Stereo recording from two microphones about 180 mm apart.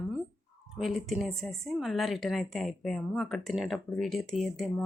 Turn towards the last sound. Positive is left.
turn(degrees=0)  # may be behind; listen again after turning